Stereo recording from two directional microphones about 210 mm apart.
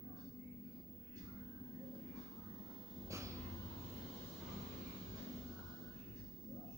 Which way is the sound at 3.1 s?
15° right (ahead or behind).